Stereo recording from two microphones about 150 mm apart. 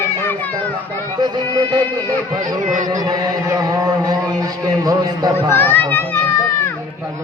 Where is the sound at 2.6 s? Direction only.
60° right (ahead or behind).